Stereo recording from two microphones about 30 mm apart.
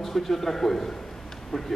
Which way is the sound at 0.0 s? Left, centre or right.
Centre.